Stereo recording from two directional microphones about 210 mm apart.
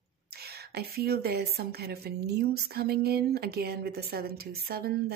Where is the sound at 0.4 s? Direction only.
50° right (ahead or behind).